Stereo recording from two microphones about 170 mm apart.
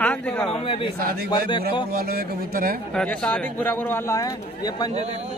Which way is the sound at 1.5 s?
30° left (ahead or behind).